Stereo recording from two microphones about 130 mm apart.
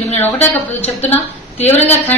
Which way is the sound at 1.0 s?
15° left (ahead or behind).